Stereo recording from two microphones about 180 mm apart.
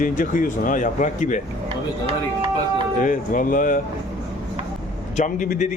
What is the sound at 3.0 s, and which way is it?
Speech, 45° left (ahead or behind).